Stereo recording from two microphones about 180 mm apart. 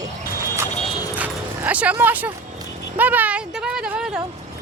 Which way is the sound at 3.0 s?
10° right (ahead or behind).